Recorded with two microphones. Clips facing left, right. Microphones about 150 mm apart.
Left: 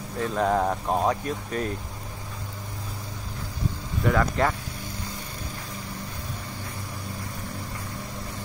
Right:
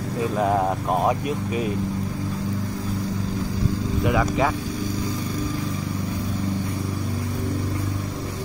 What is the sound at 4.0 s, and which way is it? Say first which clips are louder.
Speech: right 1 dB; 10° right (ahead or behind).